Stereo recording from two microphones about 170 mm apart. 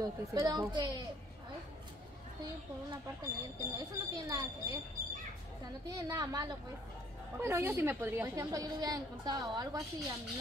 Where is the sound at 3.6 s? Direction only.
20° right (ahead or behind).